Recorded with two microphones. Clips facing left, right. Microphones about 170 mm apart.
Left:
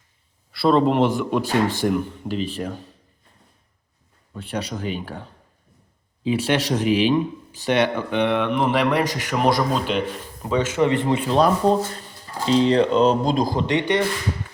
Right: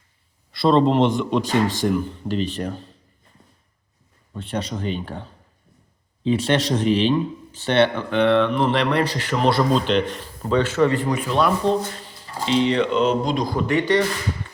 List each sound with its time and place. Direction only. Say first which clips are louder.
0.5 s speech: right 1 dB; 5° left (ahead or behind)
1.5 s speech: even; 15° right (ahead or behind)
1.8 s speech: even; 15° left (ahead or behind)
2.2 s speech: right 1 dB; 5° left (ahead or behind)
4.4 s speech: right 1 dB; 5° left (ahead or behind)
6.2 s speech: right 1 dB; 10° left (ahead or behind)